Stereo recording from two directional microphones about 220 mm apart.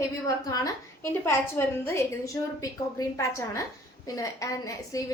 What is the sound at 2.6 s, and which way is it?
A woman's voice, 15° left (ahead or behind).